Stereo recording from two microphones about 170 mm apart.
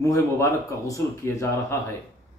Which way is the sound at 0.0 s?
15° left (ahead or behind).